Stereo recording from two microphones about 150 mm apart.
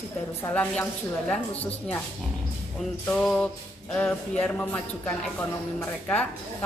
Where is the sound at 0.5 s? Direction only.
10° left (ahead or behind).